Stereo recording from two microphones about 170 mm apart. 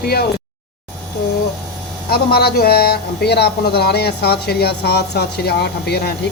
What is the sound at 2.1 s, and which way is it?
A man's voice, 65° left (ahead or behind).